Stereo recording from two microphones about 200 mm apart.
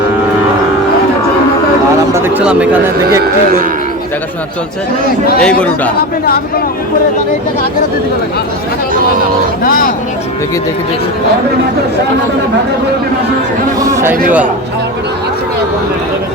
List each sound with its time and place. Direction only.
2.1 s speech: 10° right (ahead or behind)
5.4 s speech: 5° left (ahead or behind)
9.6 s speech: 45° left (ahead or behind)
13.7 s speech: 15° right (ahead or behind)